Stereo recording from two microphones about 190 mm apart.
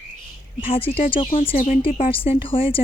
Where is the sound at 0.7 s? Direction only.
30° left (ahead or behind).